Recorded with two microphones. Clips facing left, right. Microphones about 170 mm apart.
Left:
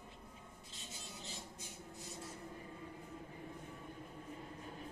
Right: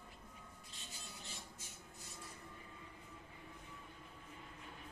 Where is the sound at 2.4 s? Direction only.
40° left (ahead or behind).